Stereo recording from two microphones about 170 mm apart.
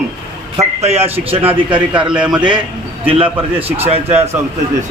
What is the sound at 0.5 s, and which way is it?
A man's voice, 40° right (ahead or behind).